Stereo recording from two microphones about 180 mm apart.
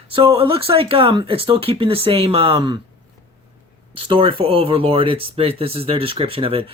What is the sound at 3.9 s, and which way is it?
Speech, 30° right (ahead or behind).